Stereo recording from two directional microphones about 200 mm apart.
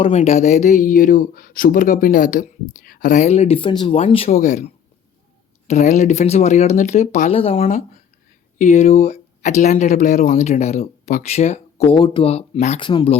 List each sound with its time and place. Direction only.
0.0 s speech: 35° left (ahead or behind)
12.9 s speech: 20° left (ahead or behind)